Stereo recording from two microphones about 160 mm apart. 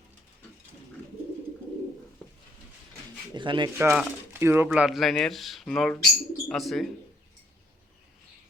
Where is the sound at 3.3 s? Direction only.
30° right (ahead or behind).